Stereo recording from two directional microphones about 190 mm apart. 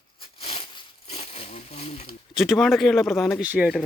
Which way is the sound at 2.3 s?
Centre (ahead or behind).